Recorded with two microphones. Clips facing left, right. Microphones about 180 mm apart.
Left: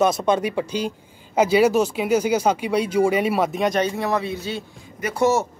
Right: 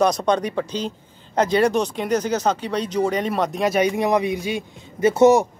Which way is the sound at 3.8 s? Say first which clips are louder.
Right 3 dB; 15° right (ahead or behind).